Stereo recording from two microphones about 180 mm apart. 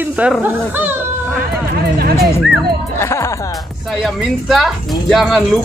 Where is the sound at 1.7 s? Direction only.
55° right (ahead or behind).